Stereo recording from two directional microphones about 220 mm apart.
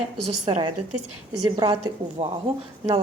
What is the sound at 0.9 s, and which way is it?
Speech, 90° right.